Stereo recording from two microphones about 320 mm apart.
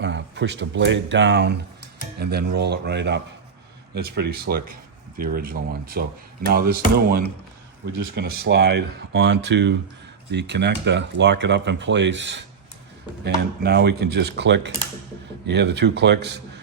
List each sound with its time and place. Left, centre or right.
0.0 s speech: right
7.9 s speech: right